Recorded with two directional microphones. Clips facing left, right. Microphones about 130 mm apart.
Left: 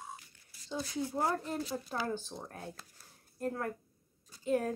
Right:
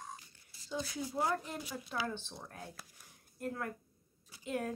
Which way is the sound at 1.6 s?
40° left (ahead or behind).